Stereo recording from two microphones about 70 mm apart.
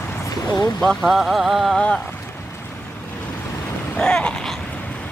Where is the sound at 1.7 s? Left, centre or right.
Centre.